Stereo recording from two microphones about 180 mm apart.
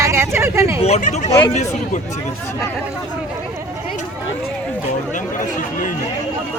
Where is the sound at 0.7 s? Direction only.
35° left (ahead or behind).